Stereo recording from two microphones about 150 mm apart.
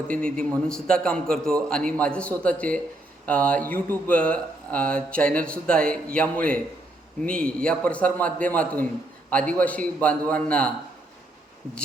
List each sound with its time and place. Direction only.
0.1 s a man's voice: 5° left (ahead or behind)